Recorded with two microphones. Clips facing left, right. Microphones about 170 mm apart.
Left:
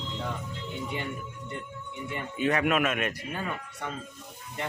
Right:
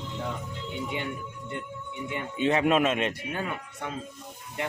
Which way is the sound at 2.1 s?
25° right (ahead or behind).